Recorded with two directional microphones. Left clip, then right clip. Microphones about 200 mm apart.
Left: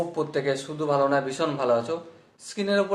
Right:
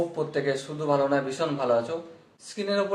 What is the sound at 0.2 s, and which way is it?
A man's voice, 35° left (ahead or behind).